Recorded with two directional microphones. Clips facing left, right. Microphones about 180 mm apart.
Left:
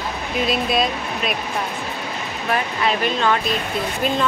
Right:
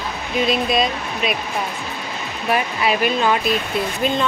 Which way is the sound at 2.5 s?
10° right (ahead or behind).